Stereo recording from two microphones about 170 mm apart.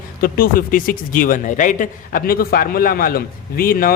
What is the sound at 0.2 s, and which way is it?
Speech, 60° left (ahead or behind).